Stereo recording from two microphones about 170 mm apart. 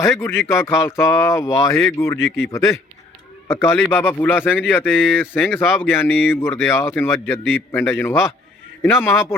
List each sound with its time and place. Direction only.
0.0 s a man's voice: 15° left (ahead or behind)